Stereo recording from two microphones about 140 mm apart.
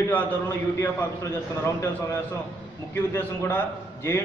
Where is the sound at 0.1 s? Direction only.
20° left (ahead or behind).